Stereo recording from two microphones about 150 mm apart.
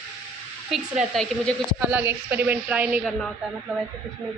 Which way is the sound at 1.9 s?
10° right (ahead or behind).